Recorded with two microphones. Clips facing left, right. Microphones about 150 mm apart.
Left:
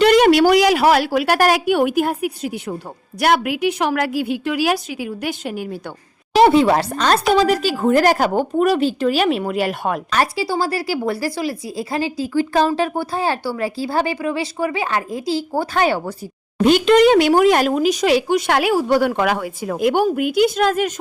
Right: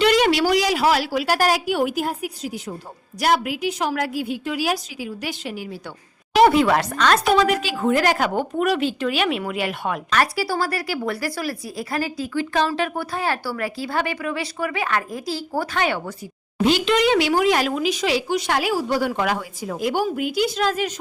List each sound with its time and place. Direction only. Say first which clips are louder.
0.0 s a woman's voice: left 6 dB; 50° left (ahead or behind)
6.3 s speech: left 3 dB; 30° left (ahead or behind)
16.6 s speech: left 6 dB; 50° left (ahead or behind)